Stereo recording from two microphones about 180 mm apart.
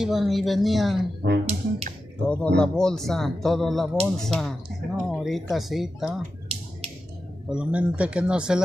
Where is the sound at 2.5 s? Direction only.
5° left (ahead or behind).